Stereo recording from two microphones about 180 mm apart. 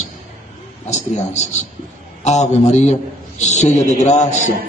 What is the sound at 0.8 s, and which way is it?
A man's voice, 40° left (ahead or behind).